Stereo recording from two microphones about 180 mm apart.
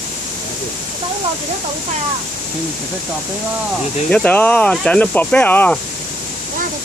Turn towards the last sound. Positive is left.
turn(degrees=10)  # may be behind; listen again after turning